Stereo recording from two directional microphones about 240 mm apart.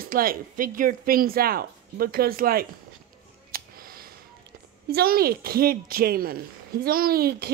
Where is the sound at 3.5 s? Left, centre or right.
Right.